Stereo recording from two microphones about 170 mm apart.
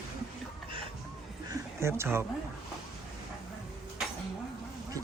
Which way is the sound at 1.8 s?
15° right (ahead or behind).